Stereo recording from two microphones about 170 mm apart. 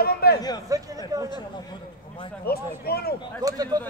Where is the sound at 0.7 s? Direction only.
20° right (ahead or behind).